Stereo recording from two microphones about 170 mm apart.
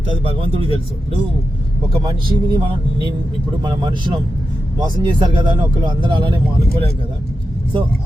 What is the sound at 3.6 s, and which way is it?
Speech, 25° right (ahead or behind).